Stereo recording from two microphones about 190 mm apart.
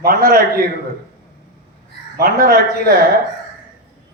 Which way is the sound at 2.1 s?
55° right (ahead or behind).